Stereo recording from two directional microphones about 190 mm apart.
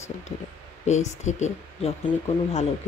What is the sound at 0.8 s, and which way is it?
Speech, 40° left (ahead or behind).